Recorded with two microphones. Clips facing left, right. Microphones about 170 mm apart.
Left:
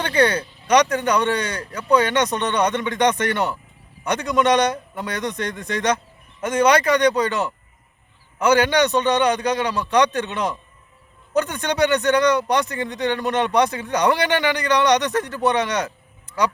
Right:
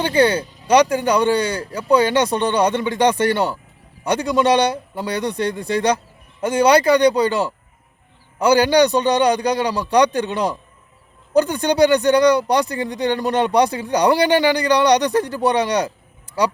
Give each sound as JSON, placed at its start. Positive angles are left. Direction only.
{"t": 0.0, "sound": "speech", "side_deg": -30}